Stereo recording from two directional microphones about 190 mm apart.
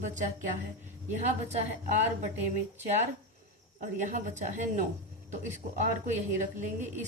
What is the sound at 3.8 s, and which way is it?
Speech, 40° right (ahead or behind).